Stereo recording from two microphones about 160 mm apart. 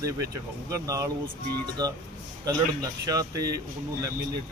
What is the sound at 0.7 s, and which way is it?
Speech, 20° right (ahead or behind).